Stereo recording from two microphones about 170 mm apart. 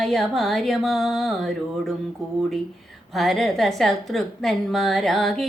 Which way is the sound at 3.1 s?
Centre (ahead or behind).